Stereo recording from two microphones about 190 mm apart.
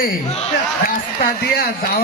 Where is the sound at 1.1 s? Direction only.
55° left (ahead or behind).